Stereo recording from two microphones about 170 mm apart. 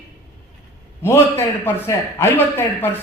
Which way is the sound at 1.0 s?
15° left (ahead or behind).